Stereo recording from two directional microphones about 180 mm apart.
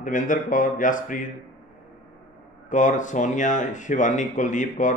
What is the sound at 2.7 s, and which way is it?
A man's voice, 45° left (ahead or behind).